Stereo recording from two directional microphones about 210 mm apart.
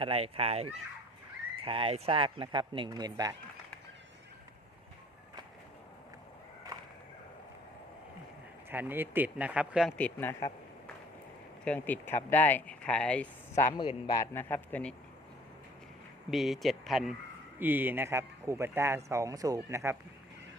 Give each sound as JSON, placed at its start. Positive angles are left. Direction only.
{"t": 0.0, "sound": "speech", "side_deg": -30}
{"t": 6.7, "sound": "a sound", "side_deg": -15}
{"t": 8.7, "sound": "speech", "side_deg": -10}
{"t": 10.0, "sound": "speech", "side_deg": 10}
{"t": 11.6, "sound": "speech", "side_deg": 5}
{"t": 13.7, "sound": "speech", "side_deg": 20}
{"t": 16.3, "sound": "speech", "side_deg": 0}